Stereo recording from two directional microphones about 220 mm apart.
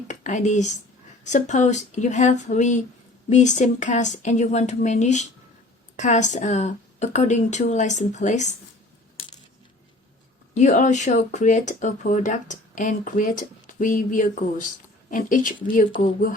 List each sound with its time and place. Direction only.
0.1 s speech: 35° left (ahead or behind)
10.5 s speech: 35° left (ahead or behind)